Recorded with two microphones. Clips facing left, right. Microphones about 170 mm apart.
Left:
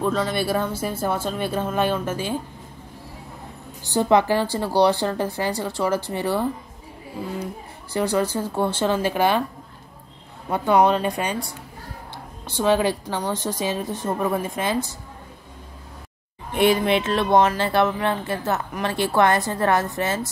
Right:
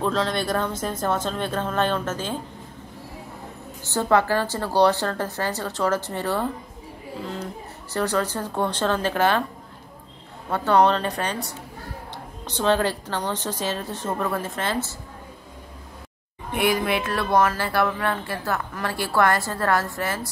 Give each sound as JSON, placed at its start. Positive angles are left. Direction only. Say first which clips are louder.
{"t": 0.0, "sound": "a woman's voice", "louder": "left 1 dB", "side_deg": 5}
{"t": 3.8, "sound": "a woman's voice", "louder": "left 2 dB", "side_deg": 15}
{"t": 7.9, "sound": "a woman's voice", "louder": "left 2 dB", "side_deg": 10}
{"t": 10.5, "sound": "a woman's voice", "louder": "left 1 dB", "side_deg": 10}
{"t": 16.5, "sound": "speech", "louder": "left 4 dB", "side_deg": 25}